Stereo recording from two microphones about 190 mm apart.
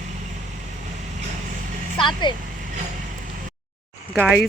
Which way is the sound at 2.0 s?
25° left (ahead or behind).